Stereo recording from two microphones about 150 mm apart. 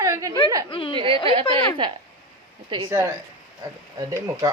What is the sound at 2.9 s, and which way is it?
Speech, 20° right (ahead or behind).